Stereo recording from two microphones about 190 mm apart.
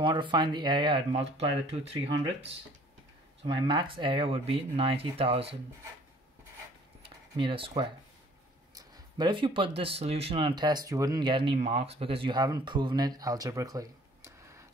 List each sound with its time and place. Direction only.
0.0 s speech: 25° right (ahead or behind)
3.4 s speech: 25° right (ahead or behind)
7.0 s a sound: 30° right (ahead or behind)
8.7 s speech: 20° right (ahead or behind)